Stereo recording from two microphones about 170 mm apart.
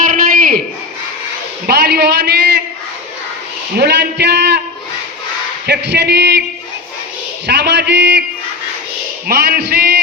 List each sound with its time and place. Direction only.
0.1 s a sound: 55° right (ahead or behind)
1.6 s a woman's voice: 70° right (ahead or behind)
3.8 s a man's voice: 75° right (ahead or behind)
5.6 s a man's voice: 85° right
7.4 s a man's voice: 75° right (ahead or behind)
9.2 s a woman's voice: 70° right (ahead or behind)